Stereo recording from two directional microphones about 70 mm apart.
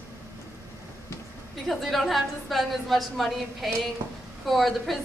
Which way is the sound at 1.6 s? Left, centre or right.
Centre.